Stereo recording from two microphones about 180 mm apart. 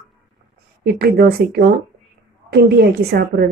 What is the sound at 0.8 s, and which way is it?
A woman's voice, 55° right (ahead or behind).